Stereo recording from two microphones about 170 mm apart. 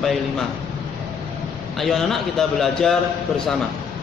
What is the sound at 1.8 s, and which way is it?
A man's voice, centre (ahead or behind).